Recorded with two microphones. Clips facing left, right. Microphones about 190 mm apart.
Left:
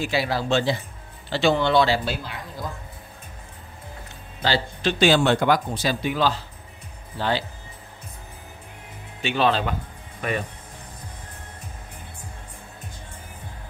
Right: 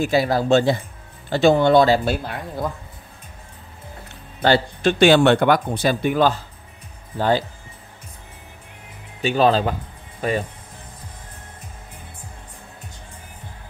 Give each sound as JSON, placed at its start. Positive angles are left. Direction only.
{"t": 0.0, "sound": "speech", "side_deg": -45}
{"t": 4.4, "sound": "speech", "side_deg": -55}
{"t": 9.2, "sound": "speech", "side_deg": -40}